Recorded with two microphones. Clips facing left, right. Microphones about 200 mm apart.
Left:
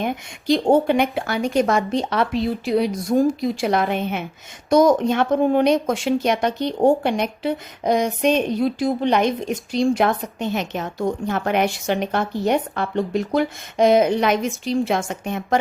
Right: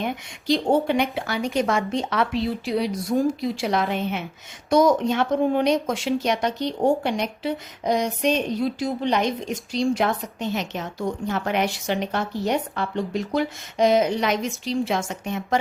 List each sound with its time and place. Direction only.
0.0 s speech: 50° left (ahead or behind)
2.6 s speech: 50° left (ahead or behind)